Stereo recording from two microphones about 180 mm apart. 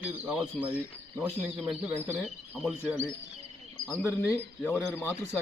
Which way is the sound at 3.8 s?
10° left (ahead or behind).